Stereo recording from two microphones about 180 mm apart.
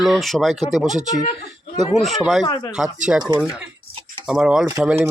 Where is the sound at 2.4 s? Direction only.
25° left (ahead or behind).